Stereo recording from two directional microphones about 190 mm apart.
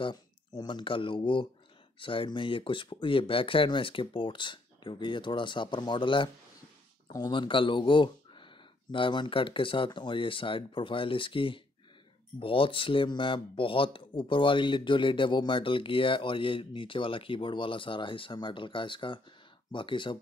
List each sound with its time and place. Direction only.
0.0 s speech: 20° left (ahead or behind)